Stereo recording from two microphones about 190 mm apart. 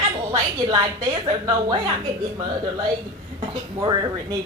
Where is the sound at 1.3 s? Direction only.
25° right (ahead or behind).